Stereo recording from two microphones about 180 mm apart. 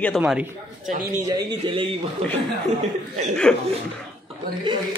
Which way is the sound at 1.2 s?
20° right (ahead or behind).